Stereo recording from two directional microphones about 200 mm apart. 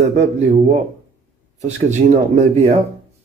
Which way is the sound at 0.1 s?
35° right (ahead or behind).